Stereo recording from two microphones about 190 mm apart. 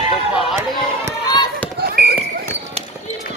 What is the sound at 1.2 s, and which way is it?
Basketball bounce, 20° left (ahead or behind).